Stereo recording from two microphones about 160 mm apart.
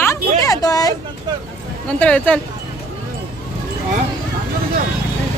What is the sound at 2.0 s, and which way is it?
Speech, 10° left (ahead or behind).